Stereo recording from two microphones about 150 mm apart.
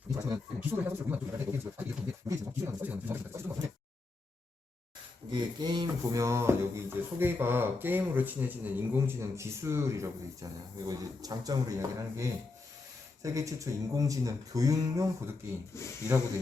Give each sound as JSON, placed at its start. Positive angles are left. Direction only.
{"t": 0.1, "sound": "speech", "side_deg": -20}
{"t": 5.3, "sound": "speech", "side_deg": -30}